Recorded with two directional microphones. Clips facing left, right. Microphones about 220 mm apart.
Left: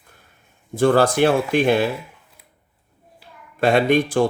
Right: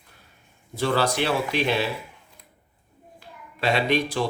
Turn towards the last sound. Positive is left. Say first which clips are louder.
# left 6 dB
turn(degrees=50)  # may be behind; listen again after turning